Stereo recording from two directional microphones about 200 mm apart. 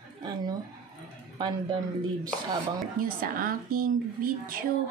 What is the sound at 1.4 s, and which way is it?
Speech, 20° right (ahead or behind).